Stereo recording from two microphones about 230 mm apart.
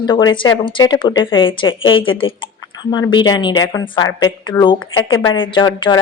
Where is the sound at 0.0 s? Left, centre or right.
Centre.